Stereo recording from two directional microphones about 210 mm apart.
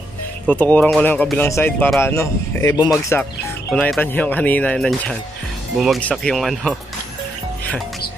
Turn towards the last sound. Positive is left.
turn(degrees=0)  # may be behind; listen again after turning